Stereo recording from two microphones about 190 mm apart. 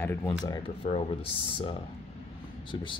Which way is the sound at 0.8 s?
30° left (ahead or behind).